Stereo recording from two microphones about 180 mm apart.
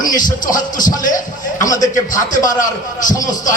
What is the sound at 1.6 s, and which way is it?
Speech, 20° left (ahead or behind).